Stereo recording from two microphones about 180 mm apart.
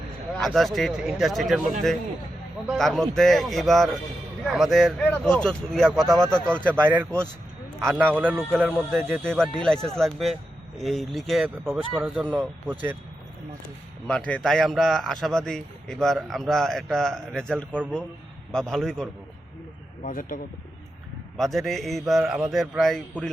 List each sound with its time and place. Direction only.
0.3 s speech: centre (ahead or behind)
2.6 s speech: centre (ahead or behind)
6.7 s a man's voice: 10° right (ahead or behind)
14.1 s speech: 5° left (ahead or behind)
20.1 s speech: 50° left (ahead or behind)
21.3 s speech: centre (ahead or behind)